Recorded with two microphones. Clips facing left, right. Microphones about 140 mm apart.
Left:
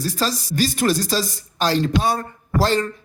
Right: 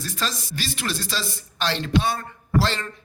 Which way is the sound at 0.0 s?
35° left (ahead or behind).